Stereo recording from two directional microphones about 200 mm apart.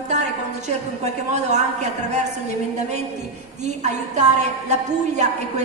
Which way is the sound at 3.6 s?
35° right (ahead or behind).